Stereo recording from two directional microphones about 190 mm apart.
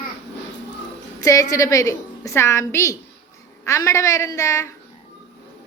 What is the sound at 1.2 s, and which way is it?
A woman's voice, 15° left (ahead or behind).